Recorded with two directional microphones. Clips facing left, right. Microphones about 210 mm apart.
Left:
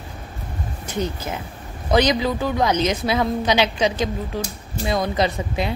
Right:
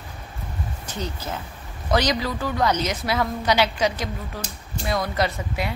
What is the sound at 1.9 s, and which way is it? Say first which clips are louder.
A woman's voice: left 4 dB; 20° left (ahead or behind).